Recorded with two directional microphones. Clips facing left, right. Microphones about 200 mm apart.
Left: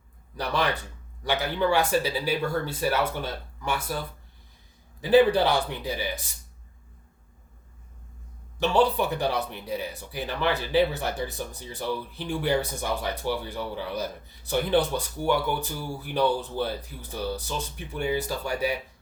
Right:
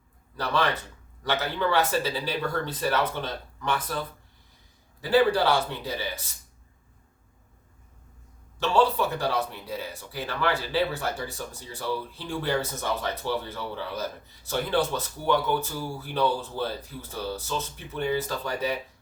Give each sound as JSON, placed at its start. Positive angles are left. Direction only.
{"t": 0.3, "sound": "speech", "side_deg": 15}
{"t": 4.9, "sound": "speech", "side_deg": 20}
{"t": 8.5, "sound": "speech", "side_deg": 15}